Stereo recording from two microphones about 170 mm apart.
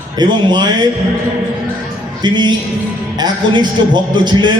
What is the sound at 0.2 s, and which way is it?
Speech, 25° right (ahead or behind).